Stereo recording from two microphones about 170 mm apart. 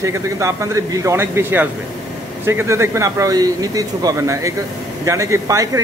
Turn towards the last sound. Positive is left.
turn(degrees=-20)  # may be behind; listen again after turning